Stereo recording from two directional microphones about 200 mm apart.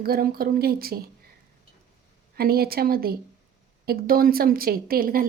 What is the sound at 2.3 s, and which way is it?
Speech, 50° right (ahead or behind).